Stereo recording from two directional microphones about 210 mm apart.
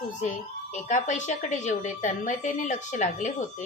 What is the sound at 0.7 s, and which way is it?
A woman's voice, 35° left (ahead or behind).